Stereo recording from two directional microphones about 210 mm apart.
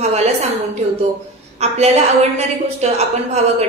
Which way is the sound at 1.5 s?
30° right (ahead or behind).